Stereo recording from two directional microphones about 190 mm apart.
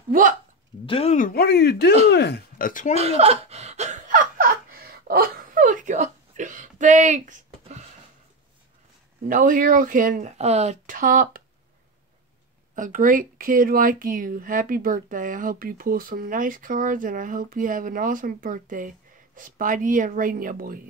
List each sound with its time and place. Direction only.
0.1 s speech: 45° right (ahead or behind)
0.8 s speech: 30° left (ahead or behind)
1.1 s speech: 50° left (ahead or behind)
2.9 s laughter: 35° right (ahead or behind)
9.3 s speech: 45° right (ahead or behind)
12.7 s speech: 45° right (ahead or behind)